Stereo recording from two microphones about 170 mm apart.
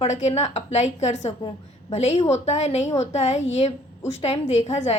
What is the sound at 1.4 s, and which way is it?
Speech, 30° left (ahead or behind).